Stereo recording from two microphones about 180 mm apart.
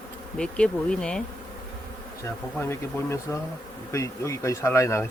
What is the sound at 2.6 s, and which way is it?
Speech, 15° left (ahead or behind).